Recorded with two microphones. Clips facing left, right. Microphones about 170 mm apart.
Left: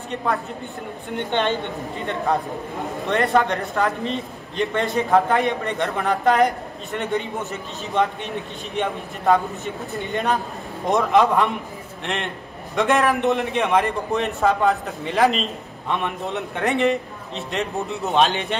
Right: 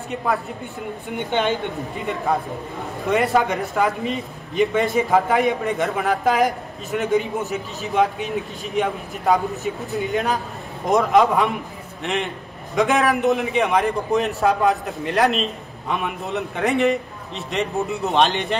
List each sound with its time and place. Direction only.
0.1 s a man's voice: 5° right (ahead or behind)
3.1 s a man's voice: 5° right (ahead or behind)